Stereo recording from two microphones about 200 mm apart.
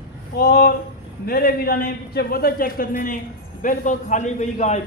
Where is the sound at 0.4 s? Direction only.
50° left (ahead or behind).